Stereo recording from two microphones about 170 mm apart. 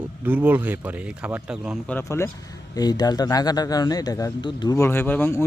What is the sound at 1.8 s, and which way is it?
Speech, 15° left (ahead or behind).